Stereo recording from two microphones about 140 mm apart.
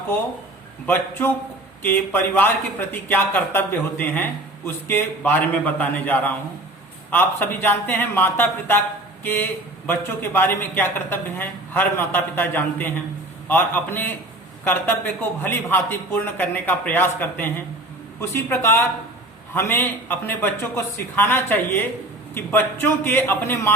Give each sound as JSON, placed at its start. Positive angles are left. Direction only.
{"t": 0.9, "sound": "a man's voice", "side_deg": 15}